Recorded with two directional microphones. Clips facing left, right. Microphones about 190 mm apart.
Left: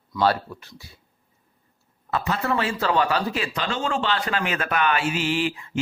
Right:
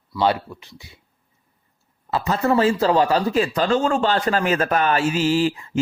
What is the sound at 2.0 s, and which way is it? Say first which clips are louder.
Speech: right 5 dB; 35° right (ahead or behind).